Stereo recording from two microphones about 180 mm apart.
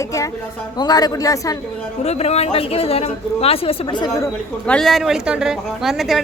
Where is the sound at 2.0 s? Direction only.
35° left (ahead or behind).